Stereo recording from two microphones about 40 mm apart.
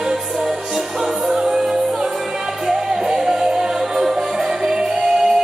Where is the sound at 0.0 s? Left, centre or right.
Centre.